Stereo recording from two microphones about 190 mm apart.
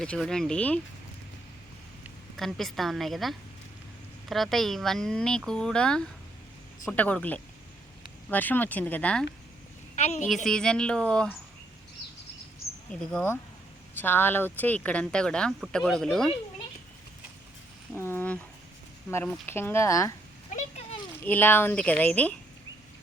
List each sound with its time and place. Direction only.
0.0 s speech: 5° left (ahead or behind)
2.3 s speech: centre (ahead or behind)
9.9 s a woman's voice: 35° left (ahead or behind)
10.2 s speech: centre (ahead or behind)
12.9 s speech: 5° left (ahead or behind)
17.9 s speech: 10° left (ahead or behind)
19.5 s speech: 10° left (ahead or behind)
21.2 s speech: 10° left (ahead or behind)